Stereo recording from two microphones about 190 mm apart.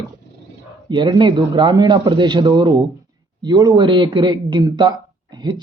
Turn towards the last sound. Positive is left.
turn(degrees=-25)  # may be behind; listen again after turning